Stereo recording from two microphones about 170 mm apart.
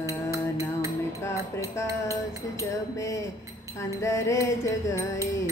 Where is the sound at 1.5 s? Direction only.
20° left (ahead or behind).